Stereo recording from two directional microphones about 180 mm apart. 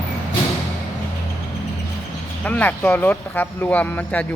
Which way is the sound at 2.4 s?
10° left (ahead or behind).